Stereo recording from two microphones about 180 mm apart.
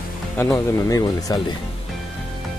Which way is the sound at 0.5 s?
20° left (ahead or behind).